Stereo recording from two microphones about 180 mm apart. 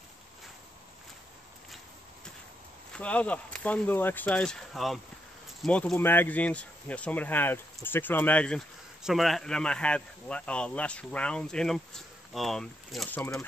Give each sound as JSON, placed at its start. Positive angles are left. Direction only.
{"t": 2.9, "sound": "speech", "side_deg": 10}